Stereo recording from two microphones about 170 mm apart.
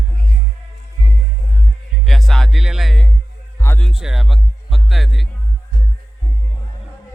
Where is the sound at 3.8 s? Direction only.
5° right (ahead or behind).